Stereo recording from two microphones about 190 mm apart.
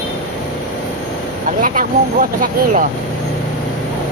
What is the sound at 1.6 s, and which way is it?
Vehicle, 45° right (ahead or behind).